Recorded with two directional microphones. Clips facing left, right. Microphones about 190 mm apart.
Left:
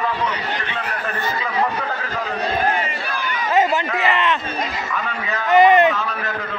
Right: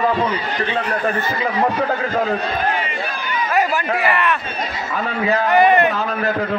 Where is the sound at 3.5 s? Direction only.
25° left (ahead or behind).